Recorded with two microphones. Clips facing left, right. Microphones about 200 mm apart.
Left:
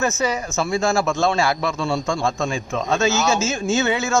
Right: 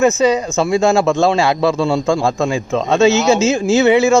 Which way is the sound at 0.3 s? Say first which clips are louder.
Right 8 dB; 20° right (ahead or behind).